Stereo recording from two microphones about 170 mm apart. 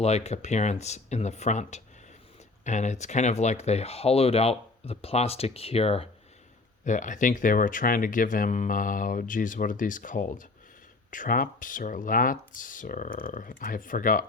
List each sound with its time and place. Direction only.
0.0 s speech: 40° left (ahead or behind)
6.8 s speech: 45° left (ahead or behind)